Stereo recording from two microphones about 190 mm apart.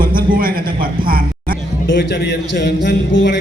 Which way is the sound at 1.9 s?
60° left (ahead or behind).